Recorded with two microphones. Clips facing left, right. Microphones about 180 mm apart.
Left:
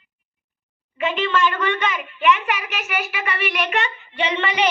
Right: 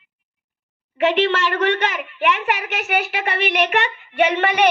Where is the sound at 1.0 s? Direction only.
75° right (ahead or behind); by 4.6 s 55° right (ahead or behind).